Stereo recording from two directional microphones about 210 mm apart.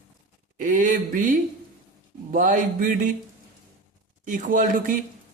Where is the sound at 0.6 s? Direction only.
40° right (ahead or behind).